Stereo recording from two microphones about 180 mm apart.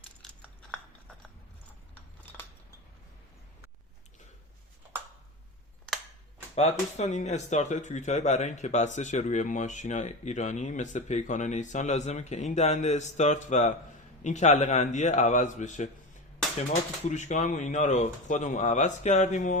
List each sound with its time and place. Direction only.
6.6 s speech: 40° left (ahead or behind)
17.1 s speech: 40° left (ahead or behind)